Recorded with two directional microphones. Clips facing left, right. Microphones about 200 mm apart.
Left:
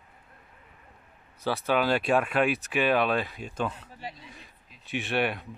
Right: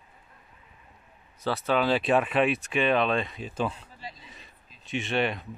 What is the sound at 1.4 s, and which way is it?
Speech, centre (ahead or behind).